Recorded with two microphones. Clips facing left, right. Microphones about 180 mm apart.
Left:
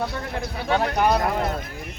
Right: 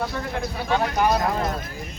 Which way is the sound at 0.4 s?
65° left (ahead or behind).